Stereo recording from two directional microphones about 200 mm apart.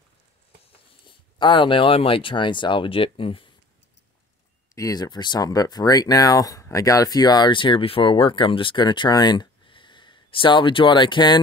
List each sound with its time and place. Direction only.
0.7 s speech: 25° left (ahead or behind)
4.7 s speech: 20° left (ahead or behind)